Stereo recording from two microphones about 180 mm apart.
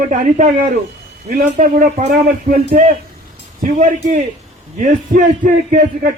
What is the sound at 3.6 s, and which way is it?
Speech, 45° right (ahead or behind).